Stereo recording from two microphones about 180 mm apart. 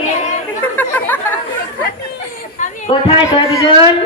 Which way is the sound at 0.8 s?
10° left (ahead or behind).